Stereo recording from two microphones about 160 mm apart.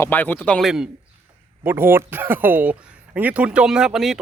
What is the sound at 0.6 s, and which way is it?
A man's voice, 5° right (ahead or behind).